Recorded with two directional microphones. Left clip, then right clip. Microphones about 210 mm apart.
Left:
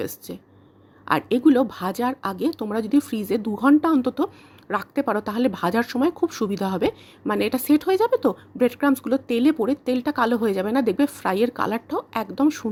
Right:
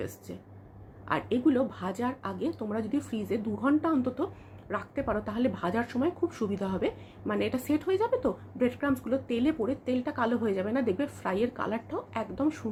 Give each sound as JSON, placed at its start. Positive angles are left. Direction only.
{"t": 0.3, "sound": "speech", "side_deg": 50}